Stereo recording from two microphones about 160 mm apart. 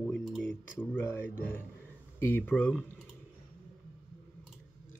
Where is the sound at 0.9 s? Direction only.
15° left (ahead or behind).